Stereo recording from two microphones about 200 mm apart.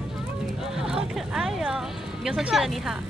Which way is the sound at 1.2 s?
Centre (ahead or behind).